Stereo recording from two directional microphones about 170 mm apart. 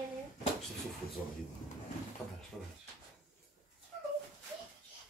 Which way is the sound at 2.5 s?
10° right (ahead or behind).